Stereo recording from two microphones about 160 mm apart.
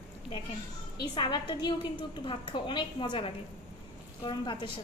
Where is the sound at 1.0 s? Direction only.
30° left (ahead or behind).